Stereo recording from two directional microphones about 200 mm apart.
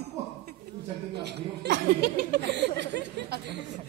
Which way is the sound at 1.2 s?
55° right (ahead or behind).